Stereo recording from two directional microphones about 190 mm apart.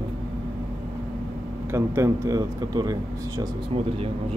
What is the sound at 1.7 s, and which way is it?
Speech, 15° right (ahead or behind).